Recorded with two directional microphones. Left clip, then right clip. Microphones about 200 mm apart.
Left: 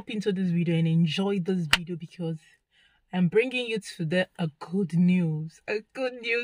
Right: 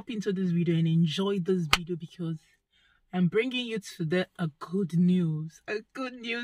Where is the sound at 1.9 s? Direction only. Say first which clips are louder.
Left 1 dB; 25° left (ahead or behind).